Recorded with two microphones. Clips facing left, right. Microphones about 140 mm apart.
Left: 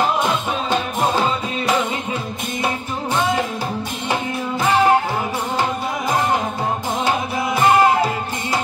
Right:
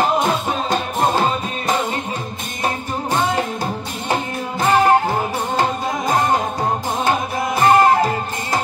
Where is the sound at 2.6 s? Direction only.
45° right (ahead or behind).